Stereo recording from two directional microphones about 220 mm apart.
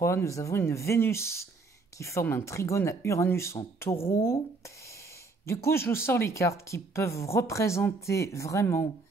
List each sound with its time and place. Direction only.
0.0 s speech: 15° left (ahead or behind)
4.0 s speech: 25° left (ahead or behind)
5.5 s speech: 10° left (ahead or behind)